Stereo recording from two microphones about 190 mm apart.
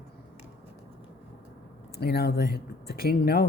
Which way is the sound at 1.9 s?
55° left (ahead or behind).